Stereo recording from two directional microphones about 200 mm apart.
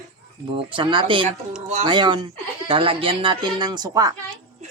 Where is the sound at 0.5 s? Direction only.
25° right (ahead or behind).